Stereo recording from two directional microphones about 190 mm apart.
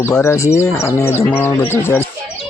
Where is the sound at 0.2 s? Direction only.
15° left (ahead or behind).